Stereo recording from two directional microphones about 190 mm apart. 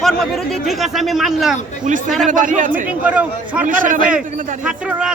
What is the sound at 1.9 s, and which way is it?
Speech, 40° right (ahead or behind).